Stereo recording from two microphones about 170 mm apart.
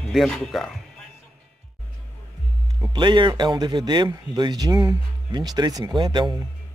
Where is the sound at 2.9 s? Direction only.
30° right (ahead or behind).